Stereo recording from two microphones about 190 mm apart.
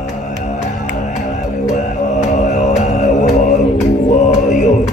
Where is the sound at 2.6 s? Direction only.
35° left (ahead or behind).